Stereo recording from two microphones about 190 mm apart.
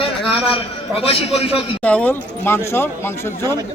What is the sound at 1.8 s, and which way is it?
Speech, 10° left (ahead or behind).